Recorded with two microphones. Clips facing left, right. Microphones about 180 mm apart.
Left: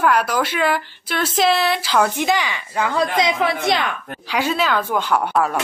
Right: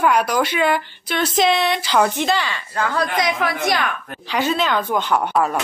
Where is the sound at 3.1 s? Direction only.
25° left (ahead or behind).